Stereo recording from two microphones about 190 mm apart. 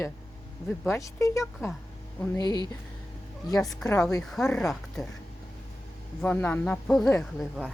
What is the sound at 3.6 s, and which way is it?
Speech, centre (ahead or behind).